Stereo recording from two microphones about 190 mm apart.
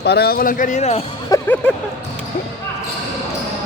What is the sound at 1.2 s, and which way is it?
Speech, 15° left (ahead or behind).